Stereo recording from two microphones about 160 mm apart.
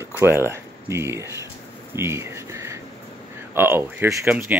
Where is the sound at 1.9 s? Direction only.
15° right (ahead or behind).